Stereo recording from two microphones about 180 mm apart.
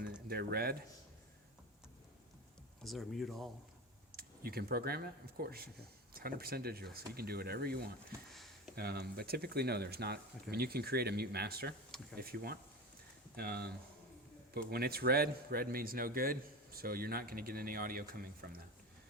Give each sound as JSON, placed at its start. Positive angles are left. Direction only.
{"t": 0.3, "sound": "a man's voice", "side_deg": -55}
{"t": 2.8, "sound": "speech", "side_deg": 0}
{"t": 4.1, "sound": "a man's voice", "side_deg": -55}